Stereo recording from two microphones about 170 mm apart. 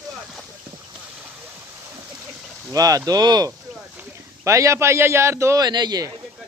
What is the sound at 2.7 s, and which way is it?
A man's voice, 20° right (ahead or behind).